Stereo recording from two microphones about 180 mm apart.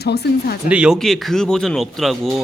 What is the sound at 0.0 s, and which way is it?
Speech, 65° left (ahead or behind).